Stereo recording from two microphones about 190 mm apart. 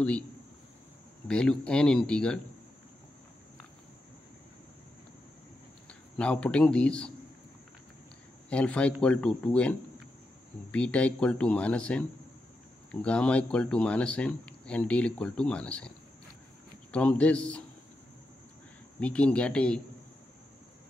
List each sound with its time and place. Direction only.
1.2 s speech: 5° left (ahead or behind)
5.9 s a man's voice: 5° left (ahead or behind)
8.5 s speech: 5° left (ahead or behind)
16.9 s speech: 5° left (ahead or behind)
18.9 s speech: 5° left (ahead or behind)